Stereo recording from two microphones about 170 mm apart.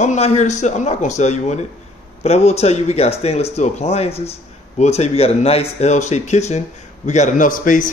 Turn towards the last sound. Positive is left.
turn(degrees=50)  # may be behind; listen again after turning